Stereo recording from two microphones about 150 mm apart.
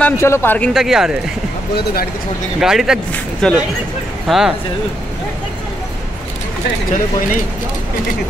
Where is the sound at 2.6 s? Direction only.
5° right (ahead or behind).